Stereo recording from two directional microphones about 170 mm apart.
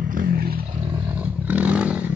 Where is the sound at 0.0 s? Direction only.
55° right (ahead or behind).